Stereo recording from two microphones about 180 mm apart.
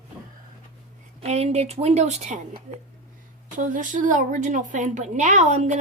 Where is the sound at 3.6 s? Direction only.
45° right (ahead or behind).